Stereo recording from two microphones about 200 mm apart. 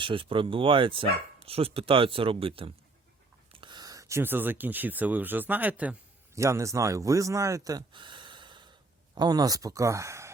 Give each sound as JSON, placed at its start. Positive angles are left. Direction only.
{"t": 0.0, "sound": "speech", "side_deg": -25}